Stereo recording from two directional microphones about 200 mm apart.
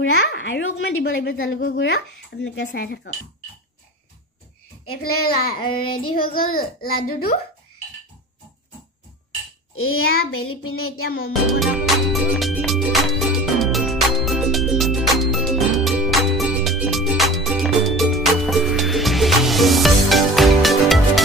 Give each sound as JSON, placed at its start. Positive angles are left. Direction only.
{"t": 0.3, "sound": "speech", "side_deg": 70}
{"t": 4.8, "sound": "child singing", "side_deg": 90}
{"t": 5.6, "sound": "child singing", "side_deg": 25}
{"t": 6.1, "sound": "a child's voice", "side_deg": 45}
{"t": 9.8, "sound": "child singing", "side_deg": 90}
{"t": 11.4, "sound": "music", "side_deg": 0}